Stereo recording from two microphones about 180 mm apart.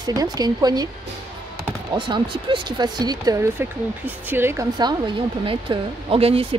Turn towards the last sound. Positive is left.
turn(degrees=-30)  # may be behind; listen again after turning